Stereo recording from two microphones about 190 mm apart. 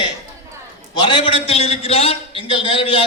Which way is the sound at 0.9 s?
25° left (ahead or behind).